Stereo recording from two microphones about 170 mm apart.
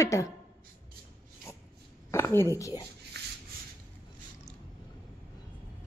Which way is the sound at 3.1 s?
75° right (ahead or behind).